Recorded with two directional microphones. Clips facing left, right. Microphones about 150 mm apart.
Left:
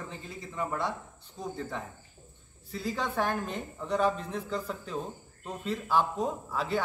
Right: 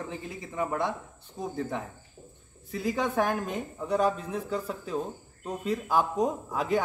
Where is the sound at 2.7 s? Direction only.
15° right (ahead or behind).